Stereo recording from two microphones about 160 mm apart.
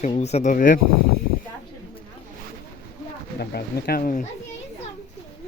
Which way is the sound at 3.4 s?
80° left.